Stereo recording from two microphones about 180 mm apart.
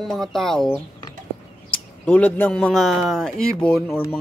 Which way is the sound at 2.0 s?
10° left (ahead or behind).